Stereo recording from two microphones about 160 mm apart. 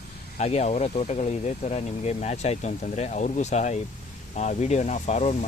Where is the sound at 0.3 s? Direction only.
45° left (ahead or behind).